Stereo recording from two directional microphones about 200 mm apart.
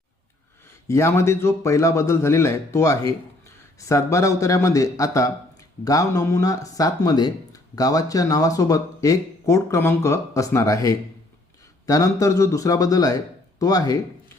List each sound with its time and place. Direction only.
0.9 s speech: 15° left (ahead or behind)